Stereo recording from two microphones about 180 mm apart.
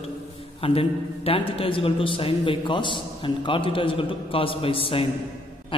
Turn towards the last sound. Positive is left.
turn(degrees=30)  # may be behind; listen again after turning